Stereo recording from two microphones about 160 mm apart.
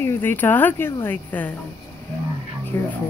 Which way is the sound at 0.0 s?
15° left (ahead or behind).